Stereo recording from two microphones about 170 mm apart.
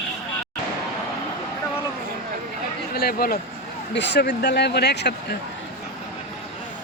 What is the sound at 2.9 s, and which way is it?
Speech, 65° left (ahead or behind).